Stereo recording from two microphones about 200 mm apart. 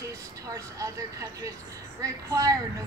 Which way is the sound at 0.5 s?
15° right (ahead or behind).